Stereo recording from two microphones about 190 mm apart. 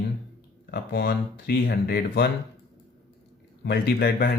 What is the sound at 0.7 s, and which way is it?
Speech, 55° left (ahead or behind).